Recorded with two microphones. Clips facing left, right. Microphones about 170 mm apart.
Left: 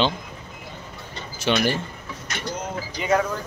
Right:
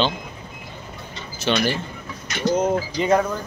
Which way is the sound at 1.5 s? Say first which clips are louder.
Even; 10° left (ahead or behind).